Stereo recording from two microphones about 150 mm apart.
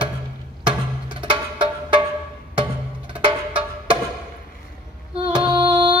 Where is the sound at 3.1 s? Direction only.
35° right (ahead or behind).